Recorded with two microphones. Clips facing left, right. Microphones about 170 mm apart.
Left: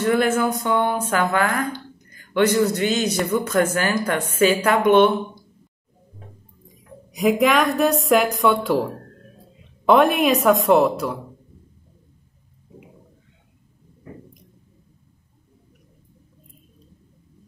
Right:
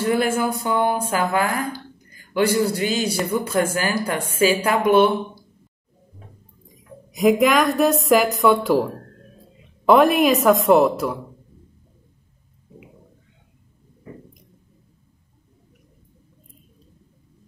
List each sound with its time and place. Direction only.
0.0 s speech: 30° right (ahead or behind)
2.3 s a man's voice: 35° right (ahead or behind)
2.6 s a man's voice: 10° right (ahead or behind)
3.4 s speech: 30° right (ahead or behind)
4.2 s a man's voice: 10° right (ahead or behind)
4.6 s speech: 30° right (ahead or behind)
4.8 s a man's voice: 5° right (ahead or behind)
6.7 s speech: centre (ahead or behind)